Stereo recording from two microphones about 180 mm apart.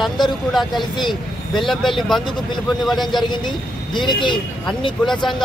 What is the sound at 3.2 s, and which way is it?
Speech, 25° left (ahead or behind).